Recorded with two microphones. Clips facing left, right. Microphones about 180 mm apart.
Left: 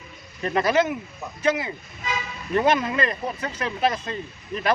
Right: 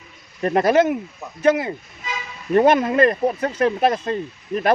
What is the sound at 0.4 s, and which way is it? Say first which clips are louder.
Speech: right 5 dB; 50° right (ahead or behind).